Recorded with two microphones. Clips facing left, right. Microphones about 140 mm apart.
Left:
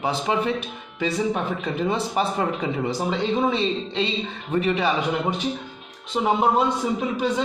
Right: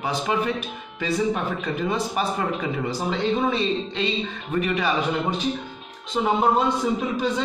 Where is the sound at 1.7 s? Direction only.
25° left (ahead or behind).